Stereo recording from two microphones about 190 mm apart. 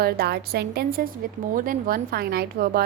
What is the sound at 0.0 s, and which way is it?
A woman's voice, 55° right (ahead or behind).